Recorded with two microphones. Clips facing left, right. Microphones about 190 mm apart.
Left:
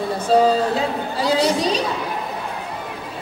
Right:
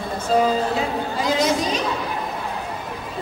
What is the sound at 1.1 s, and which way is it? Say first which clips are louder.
Chatter: left 2 dB; 35° left (ahead or behind).